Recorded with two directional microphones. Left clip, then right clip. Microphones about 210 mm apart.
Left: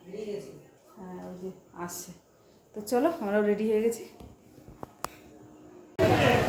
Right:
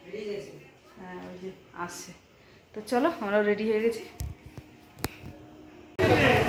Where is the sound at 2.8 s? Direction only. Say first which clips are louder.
Even; 5° left (ahead or behind).